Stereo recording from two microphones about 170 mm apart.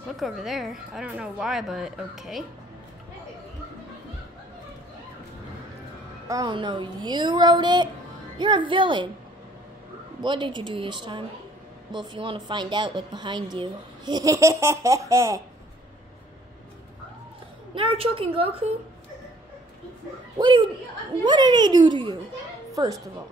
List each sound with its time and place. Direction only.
0.2 s a woman's voice: centre (ahead or behind)
6.2 s a woman's voice: 20° right (ahead or behind)
10.2 s a woman's voice: 30° right (ahead or behind)
17.7 s a woman's voice: 30° right (ahead or behind)
20.3 s a woman's voice: 30° right (ahead or behind)